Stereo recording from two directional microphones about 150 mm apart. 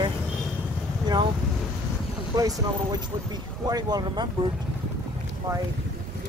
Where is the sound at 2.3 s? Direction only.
25° right (ahead or behind).